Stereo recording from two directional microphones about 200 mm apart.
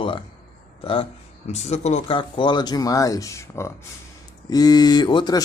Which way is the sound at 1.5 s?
35° left (ahead or behind).